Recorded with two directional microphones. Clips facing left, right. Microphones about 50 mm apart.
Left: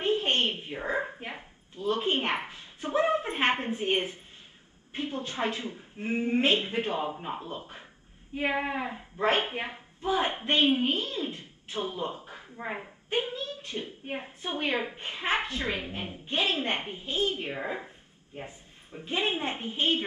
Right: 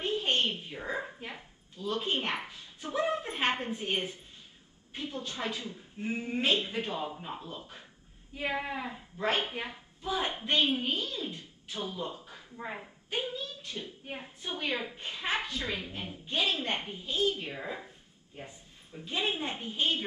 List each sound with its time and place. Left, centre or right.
0.0 s a child's voice: left